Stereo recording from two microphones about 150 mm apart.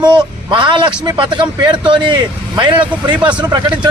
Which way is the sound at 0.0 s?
30° right (ahead or behind).